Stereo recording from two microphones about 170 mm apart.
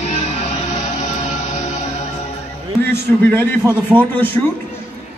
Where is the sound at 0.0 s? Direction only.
40° left (ahead or behind).